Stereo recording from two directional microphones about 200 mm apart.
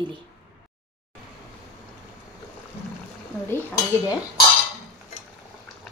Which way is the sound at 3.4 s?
15° left (ahead or behind).